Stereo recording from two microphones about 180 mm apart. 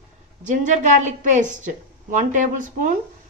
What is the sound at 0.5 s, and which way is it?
A woman's voice, 45° right (ahead or behind).